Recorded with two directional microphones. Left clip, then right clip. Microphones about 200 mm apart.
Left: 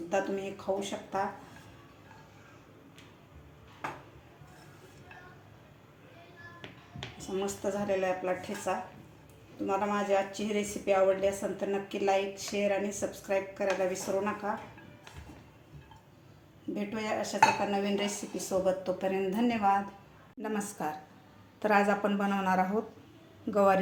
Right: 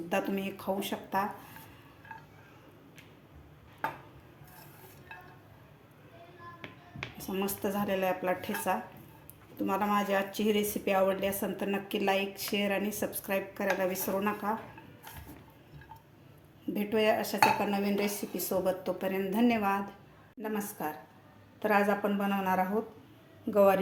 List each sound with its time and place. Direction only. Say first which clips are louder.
0.1 s a woman's voice: left 1 dB; 45° right (ahead or behind)
7.3 s a woman's voice: left 1 dB; 45° right (ahead or behind)
16.7 s a woman's voice: right 6 dB; 40° right (ahead or behind); by 19.8 s 20° right (ahead or behind)
20.4 s a woman's voice: left 1 dB; centre (ahead or behind)